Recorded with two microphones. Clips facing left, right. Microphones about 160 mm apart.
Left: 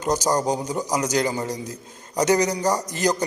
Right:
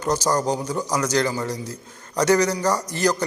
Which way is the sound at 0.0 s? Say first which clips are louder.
Even; 15° left (ahead or behind).